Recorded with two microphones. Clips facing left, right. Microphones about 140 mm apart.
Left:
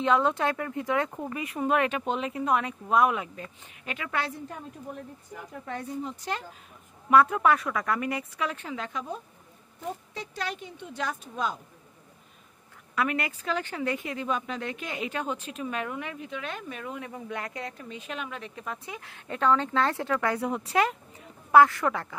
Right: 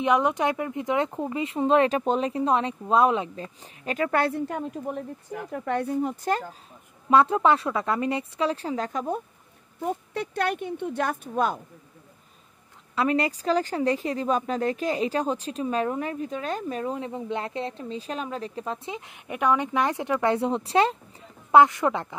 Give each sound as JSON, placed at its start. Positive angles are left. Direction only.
{"t": 0.0, "sound": "speech", "side_deg": -15}
{"t": 4.5, "sound": "speech", "side_deg": -70}
{"t": 7.1, "sound": "speech", "side_deg": -30}
{"t": 12.9, "sound": "speech", "side_deg": -30}